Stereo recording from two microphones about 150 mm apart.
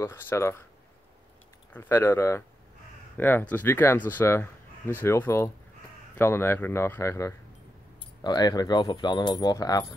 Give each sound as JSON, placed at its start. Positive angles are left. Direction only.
{"t": 0.0, "sound": "speech", "side_deg": 15}
{"t": 1.7, "sound": "speech", "side_deg": 15}